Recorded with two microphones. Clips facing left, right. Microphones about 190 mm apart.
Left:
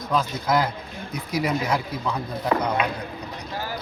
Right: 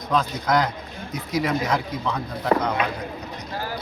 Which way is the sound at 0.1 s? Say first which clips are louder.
Right 1 dB; 5° left (ahead or behind).